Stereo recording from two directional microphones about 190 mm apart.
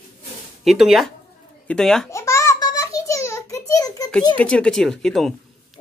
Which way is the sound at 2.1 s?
15° left (ahead or behind).